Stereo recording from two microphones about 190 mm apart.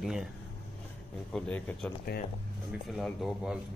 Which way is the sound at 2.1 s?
50° left (ahead or behind).